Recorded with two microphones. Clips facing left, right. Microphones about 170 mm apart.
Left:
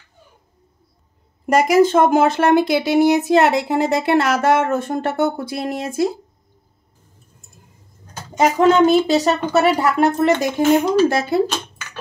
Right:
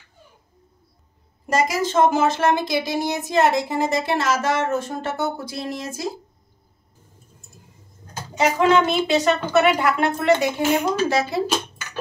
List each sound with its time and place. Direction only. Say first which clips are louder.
1.4 s speech: left 8 dB; 60° left (ahead or behind)
8.4 s a woman's voice: left 4 dB; 40° left (ahead or behind)
11.1 s speech: left 4 dB; 50° left (ahead or behind)